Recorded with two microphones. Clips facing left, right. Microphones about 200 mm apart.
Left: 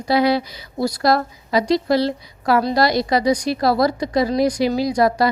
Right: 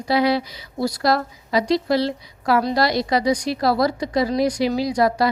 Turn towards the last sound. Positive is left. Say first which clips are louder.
# left 2 dB
turn(degrees=40)  # may be behind; listen again after turning